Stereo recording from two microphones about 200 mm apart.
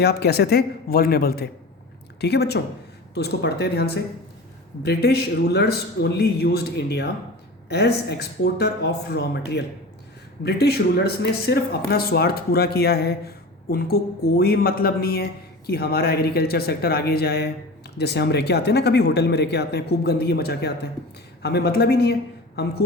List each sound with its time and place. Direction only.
0.0 s speech: 55° left (ahead or behind)